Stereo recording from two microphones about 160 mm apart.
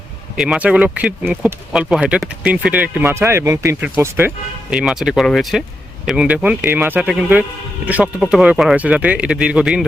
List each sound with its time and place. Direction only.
0.3 s speech: 5° right (ahead or behind)
4.7 s speech: 5° right (ahead or behind)